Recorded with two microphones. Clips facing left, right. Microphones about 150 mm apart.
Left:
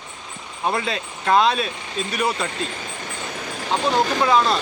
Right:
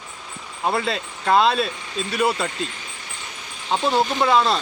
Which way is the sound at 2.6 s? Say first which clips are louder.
Left 2 dB; 60° left (ahead or behind).